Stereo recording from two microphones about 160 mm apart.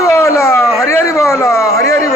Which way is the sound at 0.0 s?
15° left (ahead or behind).